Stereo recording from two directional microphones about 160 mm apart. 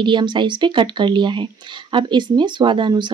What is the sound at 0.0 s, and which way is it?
Speech, 30° right (ahead or behind).